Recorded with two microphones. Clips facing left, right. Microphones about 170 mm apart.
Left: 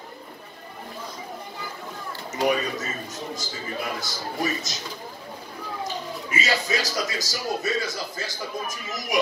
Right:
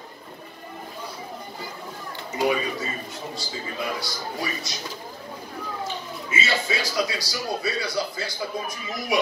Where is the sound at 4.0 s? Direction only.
45° left (ahead or behind).